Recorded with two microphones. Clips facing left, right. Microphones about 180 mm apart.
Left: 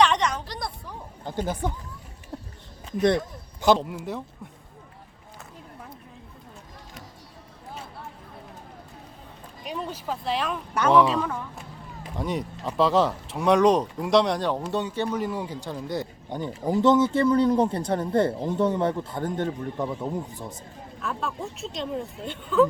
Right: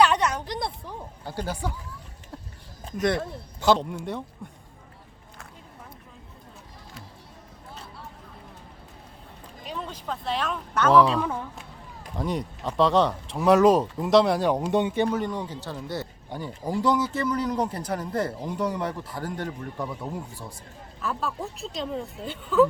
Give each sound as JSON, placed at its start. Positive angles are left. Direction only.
{"t": 0.0, "sound": "a sound", "side_deg": -5}
{"t": 0.4, "sound": "a woman's voice", "side_deg": -20}
{"t": 1.2, "sound": "speech", "side_deg": 20}
{"t": 3.8, "sound": "speech", "side_deg": 5}
{"t": 9.6, "sound": "speech", "side_deg": 15}
{"t": 15.1, "sound": "speech", "side_deg": 5}
{"t": 21.0, "sound": "speech", "side_deg": 0}